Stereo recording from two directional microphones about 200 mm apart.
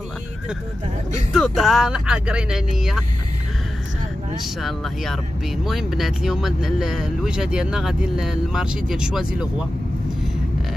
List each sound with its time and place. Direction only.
1.3 s speech: centre (ahead or behind)
4.6 s speech: centre (ahead or behind)